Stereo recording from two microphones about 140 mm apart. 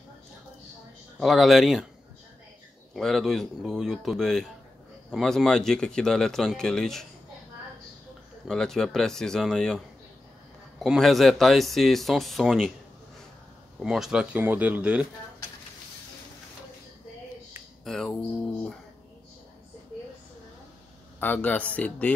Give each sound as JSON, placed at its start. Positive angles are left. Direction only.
{"t": 1.2, "sound": "speech", "side_deg": 0}
{"t": 2.9, "sound": "speech", "side_deg": 5}
{"t": 8.5, "sound": "speech", "side_deg": 5}
{"t": 10.8, "sound": "speech", "side_deg": 0}
{"t": 13.7, "sound": "speech", "side_deg": 0}
{"t": 17.8, "sound": "speech", "side_deg": 0}
{"t": 21.2, "sound": "a man's voice", "side_deg": 10}